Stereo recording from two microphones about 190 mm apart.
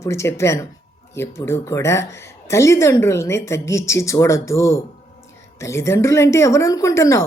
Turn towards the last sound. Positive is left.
turn(degrees=15)  # may be behind; listen again after turning